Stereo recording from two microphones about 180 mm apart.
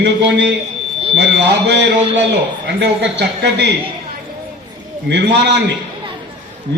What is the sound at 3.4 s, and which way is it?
Speech, 70° right (ahead or behind).